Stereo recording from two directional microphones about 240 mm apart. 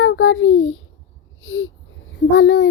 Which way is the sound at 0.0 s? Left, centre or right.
Left.